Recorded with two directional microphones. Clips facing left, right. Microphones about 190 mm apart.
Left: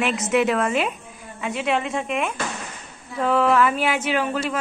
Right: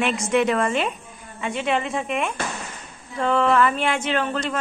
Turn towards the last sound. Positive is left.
turn(degrees=10)  # may be behind; listen again after turning